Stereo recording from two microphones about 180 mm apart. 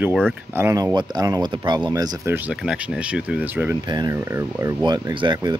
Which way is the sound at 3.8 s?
25° right (ahead or behind).